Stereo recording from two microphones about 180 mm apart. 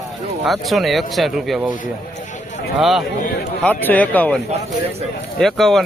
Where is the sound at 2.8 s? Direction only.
Centre (ahead or behind).